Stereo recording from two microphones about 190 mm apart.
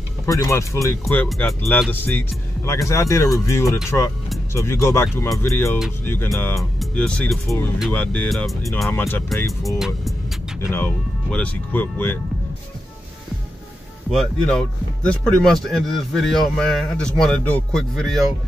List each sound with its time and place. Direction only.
0.3 s a man's voice: 15° left (ahead or behind)
14.1 s a man's voice: 5° left (ahead or behind)